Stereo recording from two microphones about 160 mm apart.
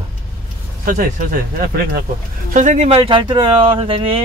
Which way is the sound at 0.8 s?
60° right (ahead or behind).